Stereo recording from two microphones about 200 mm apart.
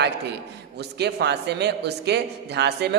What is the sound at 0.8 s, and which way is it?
A man's voice, 55° right (ahead or behind).